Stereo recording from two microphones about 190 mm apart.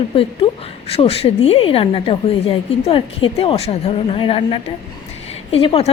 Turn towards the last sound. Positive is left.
turn(degrees=30)  # may be behind; listen again after turning